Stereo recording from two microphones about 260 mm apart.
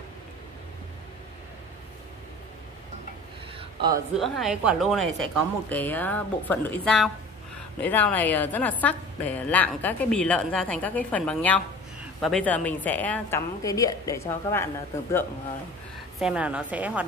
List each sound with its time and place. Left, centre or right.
3.5 s a sound: centre
4.2 s a woman's voice: centre
16.2 s a woman's voice: centre